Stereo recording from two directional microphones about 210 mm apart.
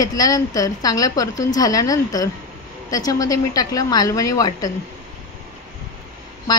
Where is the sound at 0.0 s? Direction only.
15° left (ahead or behind).